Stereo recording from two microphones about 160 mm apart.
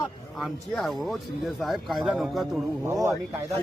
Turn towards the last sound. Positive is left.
turn(degrees=-20)  # may be behind; listen again after turning